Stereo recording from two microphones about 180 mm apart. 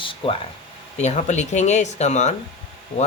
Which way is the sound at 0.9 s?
40° left (ahead or behind).